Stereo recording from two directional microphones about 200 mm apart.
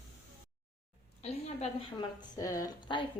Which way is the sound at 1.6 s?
20° left (ahead or behind).